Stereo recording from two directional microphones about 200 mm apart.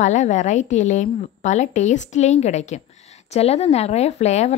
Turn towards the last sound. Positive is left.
turn(degrees=35)  # may be behind; listen again after turning